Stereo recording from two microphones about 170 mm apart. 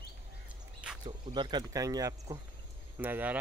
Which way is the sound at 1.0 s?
25° right (ahead or behind).